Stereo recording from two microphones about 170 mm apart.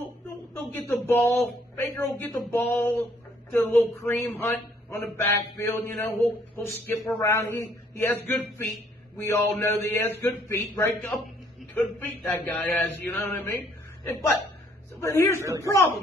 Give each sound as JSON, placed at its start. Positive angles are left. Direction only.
{"t": 0.3, "sound": "a man's voice", "side_deg": 15}
{"t": 3.6, "sound": "mantra", "side_deg": 10}
{"t": 9.2, "sound": "mantra", "side_deg": 15}
{"t": 13.1, "sound": "a man's voice", "side_deg": 10}
{"t": 15.0, "sound": "mantra", "side_deg": 15}